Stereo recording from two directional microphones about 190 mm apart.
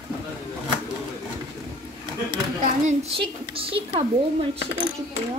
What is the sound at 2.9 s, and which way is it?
A woman's voice, 30° right (ahead or behind).